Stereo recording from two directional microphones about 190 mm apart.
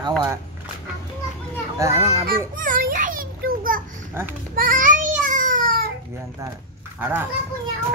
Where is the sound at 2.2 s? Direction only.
45° right (ahead or behind).